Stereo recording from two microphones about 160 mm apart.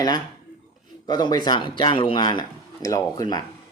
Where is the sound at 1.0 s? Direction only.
25° left (ahead or behind).